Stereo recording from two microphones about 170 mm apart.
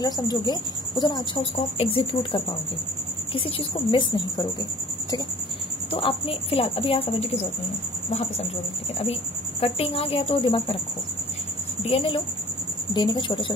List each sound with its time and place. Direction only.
0.0 s a woman's voice: 25° left (ahead or behind)
5.9 s a woman's voice: 30° left (ahead or behind)
11.8 s a woman's voice: 35° left (ahead or behind)